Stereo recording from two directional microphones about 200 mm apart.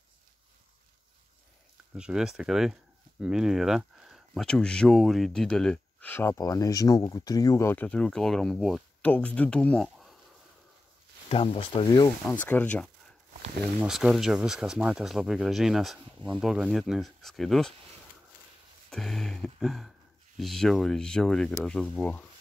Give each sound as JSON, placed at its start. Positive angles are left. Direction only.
{"t": 2.0, "sound": "speech", "side_deg": -5}
{"t": 11.2, "sound": "speech", "side_deg": 30}
{"t": 12.3, "sound": "speech", "side_deg": 10}
{"t": 13.7, "sound": "speech", "side_deg": -5}
{"t": 18.9, "sound": "speech", "side_deg": 0}